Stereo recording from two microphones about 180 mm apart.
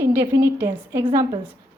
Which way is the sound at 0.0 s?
15° right (ahead or behind).